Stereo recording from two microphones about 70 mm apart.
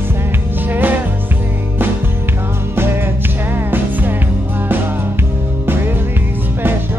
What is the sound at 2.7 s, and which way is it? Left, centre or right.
Music, right.